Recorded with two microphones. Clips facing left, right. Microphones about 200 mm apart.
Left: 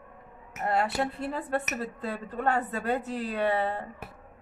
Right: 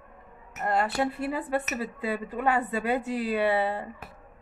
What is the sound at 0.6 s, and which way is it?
Speech, centre (ahead or behind).